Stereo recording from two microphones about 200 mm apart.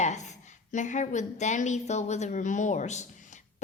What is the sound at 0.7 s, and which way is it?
A woman's voice, 40° left (ahead or behind).